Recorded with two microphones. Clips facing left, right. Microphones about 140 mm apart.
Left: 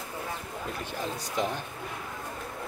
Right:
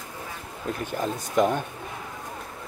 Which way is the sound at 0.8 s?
50° right (ahead or behind).